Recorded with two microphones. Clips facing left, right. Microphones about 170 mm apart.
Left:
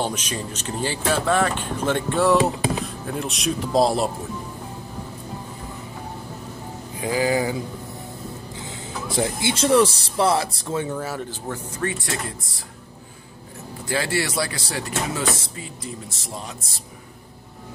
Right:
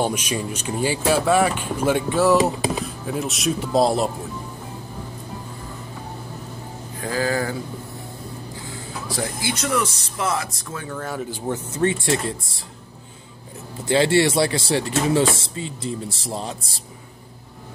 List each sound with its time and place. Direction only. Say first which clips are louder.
0.0 s speech: right 3 dB; 10° right (ahead or behind)
7.0 s speech: left 2 dB; 15° left (ahead or behind)
8.6 s speech: left 1 dB; 20° left (ahead or behind)
11.0 s speech: even; 5° left (ahead or behind)
11.2 s speech: right 4 dB; 20° right (ahead or behind)
13.8 s speech: right 7 dB; 25° right (ahead or behind)